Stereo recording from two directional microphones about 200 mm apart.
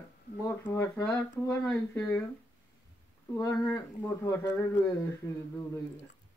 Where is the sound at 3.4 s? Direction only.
15° left (ahead or behind).